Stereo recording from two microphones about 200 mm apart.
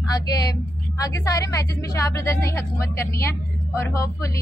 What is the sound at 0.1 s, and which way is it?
A woman's voice, 20° left (ahead or behind).